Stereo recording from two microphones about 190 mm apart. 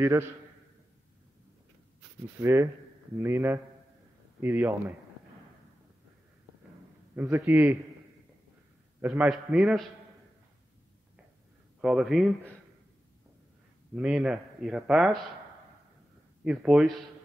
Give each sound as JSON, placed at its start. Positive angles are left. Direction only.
{"t": 0.0, "sound": "speech", "side_deg": -15}
{"t": 2.4, "sound": "speech", "side_deg": -15}
{"t": 7.2, "sound": "speech", "side_deg": -10}
{"t": 9.0, "sound": "speech", "side_deg": -5}
{"t": 11.8, "sound": "speech", "side_deg": 0}
{"t": 13.9, "sound": "speech", "side_deg": -5}
{"t": 16.4, "sound": "speech", "side_deg": -5}